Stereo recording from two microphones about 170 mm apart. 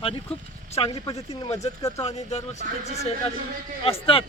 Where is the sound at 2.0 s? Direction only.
40° left (ahead or behind).